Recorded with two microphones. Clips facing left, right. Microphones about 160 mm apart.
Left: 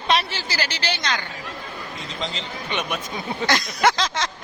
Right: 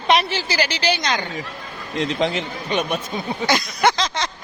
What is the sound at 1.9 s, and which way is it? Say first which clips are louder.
Speech: right 12 dB; 70° right (ahead or behind).